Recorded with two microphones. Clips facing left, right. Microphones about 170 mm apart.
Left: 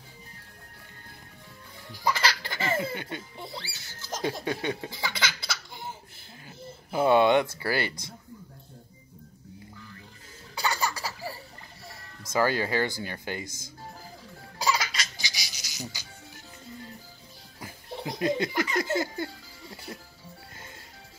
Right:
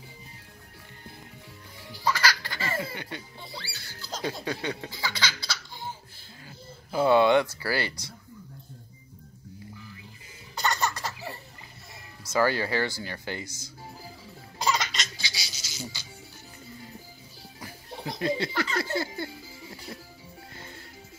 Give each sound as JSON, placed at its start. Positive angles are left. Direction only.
{"t": 2.0, "sound": "music", "side_deg": 20}
{"t": 6.9, "sound": "speech", "side_deg": 20}
{"t": 10.6, "sound": "baby laughter", "side_deg": 10}
{"t": 12.3, "sound": "speech", "side_deg": 20}
{"t": 14.7, "sound": "baby laughter", "side_deg": 5}
{"t": 15.1, "sound": "music", "side_deg": 15}
{"t": 17.6, "sound": "speech", "side_deg": 20}